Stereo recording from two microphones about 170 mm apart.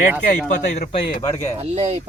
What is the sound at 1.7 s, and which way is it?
Speech, 40° right (ahead or behind).